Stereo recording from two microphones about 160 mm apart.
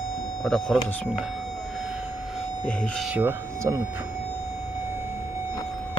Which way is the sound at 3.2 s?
15° right (ahead or behind).